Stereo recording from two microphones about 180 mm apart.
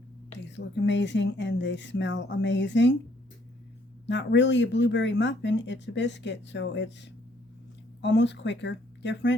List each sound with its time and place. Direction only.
0.3 s speech: 85° left
4.0 s speech: 80° left